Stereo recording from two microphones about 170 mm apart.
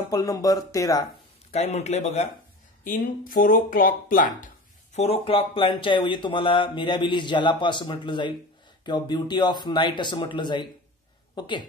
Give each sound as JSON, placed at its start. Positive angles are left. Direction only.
{"t": 0.1, "sound": "speech", "side_deg": 20}
{"t": 1.5, "sound": "a man's voice", "side_deg": 40}
{"t": 2.8, "sound": "speech", "side_deg": 55}
{"t": 4.9, "sound": "speech", "side_deg": 35}